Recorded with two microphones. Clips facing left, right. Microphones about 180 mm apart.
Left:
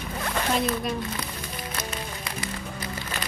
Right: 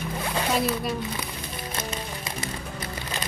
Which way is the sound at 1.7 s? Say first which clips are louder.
Right 3 dB; 25° right (ahead or behind).